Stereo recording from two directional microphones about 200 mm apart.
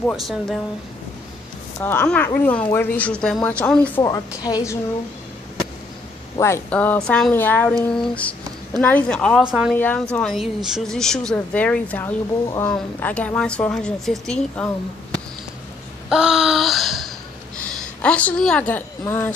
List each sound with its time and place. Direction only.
0.1 s speech: centre (ahead or behind)
1.8 s speech: 10° left (ahead or behind)
4.0 s a woman's voice: 20° left (ahead or behind)
6.3 s speech: 15° left (ahead or behind); by 9.8 s 5° right (ahead or behind)
9.8 s speech: 10° left (ahead or behind)
16.1 s a sound: 5° right (ahead or behind)
17.7 s a woman's voice: 5° left (ahead or behind)